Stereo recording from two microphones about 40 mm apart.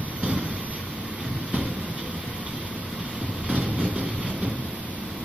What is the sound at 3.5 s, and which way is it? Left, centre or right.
Train, right.